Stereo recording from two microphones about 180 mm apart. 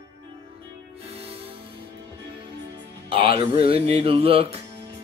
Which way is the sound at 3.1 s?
30° right (ahead or behind).